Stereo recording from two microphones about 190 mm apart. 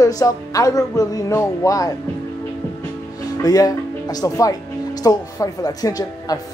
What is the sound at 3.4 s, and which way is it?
Speech, 20° left (ahead or behind).